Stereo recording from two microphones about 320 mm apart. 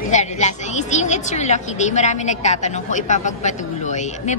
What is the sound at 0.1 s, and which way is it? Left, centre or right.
A woman's voice, left.